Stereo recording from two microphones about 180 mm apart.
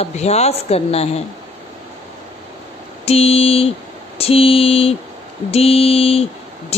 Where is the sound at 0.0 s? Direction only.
35° left (ahead or behind).